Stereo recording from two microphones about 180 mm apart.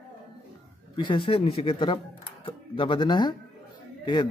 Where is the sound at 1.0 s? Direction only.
25° left (ahead or behind).